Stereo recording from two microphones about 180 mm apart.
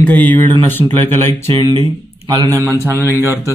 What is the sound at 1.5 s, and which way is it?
Speech, 25° right (ahead or behind).